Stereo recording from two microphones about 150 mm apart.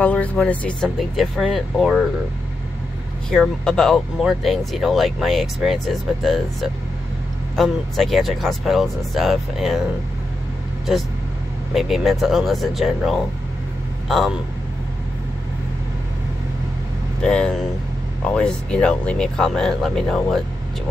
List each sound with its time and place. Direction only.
0.0 s speech: 10° left (ahead or behind)
3.3 s speech: 5° left (ahead or behind)
11.7 s speech: centre (ahead or behind)
17.2 s speech: 5° left (ahead or behind)